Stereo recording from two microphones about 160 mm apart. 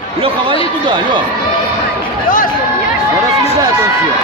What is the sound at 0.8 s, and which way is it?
Speech, 30° right (ahead or behind).